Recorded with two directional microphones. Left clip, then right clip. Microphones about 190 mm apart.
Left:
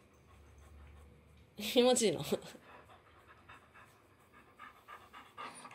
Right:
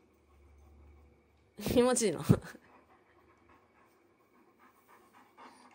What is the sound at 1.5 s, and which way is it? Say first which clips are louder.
A woman's voice: right 1 dB; 15° right (ahead or behind).